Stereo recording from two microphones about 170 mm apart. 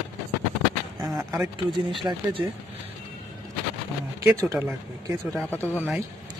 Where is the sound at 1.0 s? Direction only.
Centre (ahead or behind).